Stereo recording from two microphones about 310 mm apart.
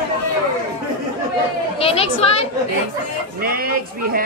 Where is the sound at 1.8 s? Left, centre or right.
Centre.